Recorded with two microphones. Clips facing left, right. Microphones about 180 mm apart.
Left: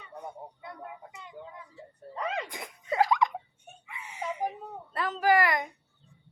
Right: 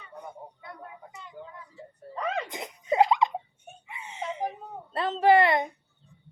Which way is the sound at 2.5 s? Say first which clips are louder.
Right 5 dB; 20° right (ahead or behind).